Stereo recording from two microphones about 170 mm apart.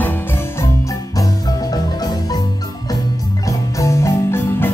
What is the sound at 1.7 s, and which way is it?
Music, 20° left (ahead or behind).